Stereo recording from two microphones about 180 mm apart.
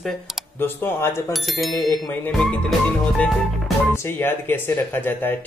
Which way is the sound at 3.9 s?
10° left (ahead or behind).